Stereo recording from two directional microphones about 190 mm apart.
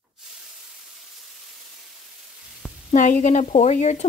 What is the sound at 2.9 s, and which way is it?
Speech, 40° left (ahead or behind).